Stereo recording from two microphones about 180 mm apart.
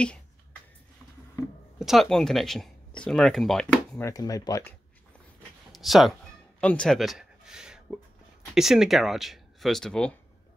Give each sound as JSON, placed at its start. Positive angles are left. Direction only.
{"t": 1.8, "sound": "speech", "side_deg": 0}
{"t": 4.0, "sound": "speech", "side_deg": 20}
{"t": 5.7, "sound": "speech", "side_deg": 0}